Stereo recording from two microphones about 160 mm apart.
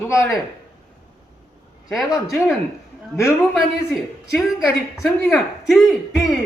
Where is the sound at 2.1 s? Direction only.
20° left (ahead or behind).